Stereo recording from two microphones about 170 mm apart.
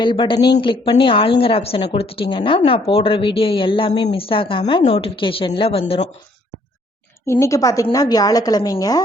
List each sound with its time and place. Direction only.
0.0 s a woman's voice: 30° left (ahead or behind)
7.3 s a woman's voice: 15° left (ahead or behind)